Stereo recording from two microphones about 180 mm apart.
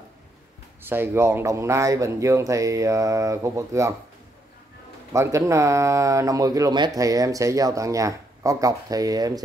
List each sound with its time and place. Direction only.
0.8 s speech: 10° right (ahead or behind)
5.1 s speech: 15° right (ahead or behind)